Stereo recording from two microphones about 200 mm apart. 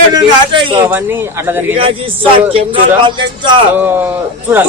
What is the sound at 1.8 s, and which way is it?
A man's voice, 25° right (ahead or behind).